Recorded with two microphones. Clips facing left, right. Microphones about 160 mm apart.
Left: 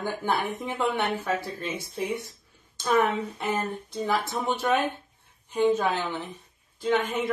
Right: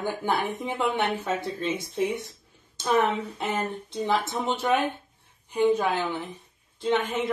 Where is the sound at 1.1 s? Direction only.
10° left (ahead or behind).